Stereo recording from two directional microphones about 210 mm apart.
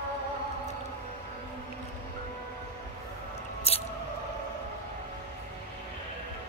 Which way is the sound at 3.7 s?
30° left (ahead or behind).